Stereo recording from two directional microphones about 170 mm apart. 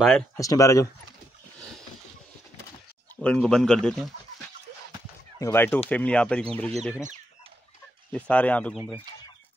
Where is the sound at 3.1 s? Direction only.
5° left (ahead or behind).